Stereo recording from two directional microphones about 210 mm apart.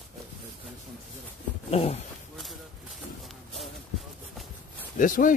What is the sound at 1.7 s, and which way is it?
Speech, 30° left (ahead or behind).